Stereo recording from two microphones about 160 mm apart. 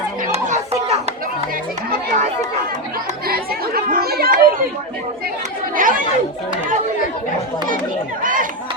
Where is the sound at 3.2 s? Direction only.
65° right (ahead or behind).